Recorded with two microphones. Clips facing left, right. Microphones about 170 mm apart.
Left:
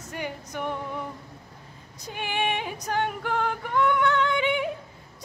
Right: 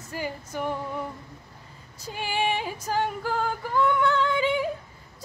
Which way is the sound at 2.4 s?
60° left (ahead or behind).